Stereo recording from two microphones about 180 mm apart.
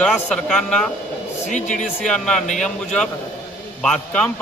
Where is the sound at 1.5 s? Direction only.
40° left (ahead or behind).